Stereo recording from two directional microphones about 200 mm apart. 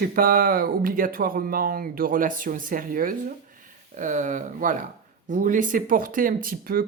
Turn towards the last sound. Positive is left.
turn(degrees=-45)  # may be behind; listen again after turning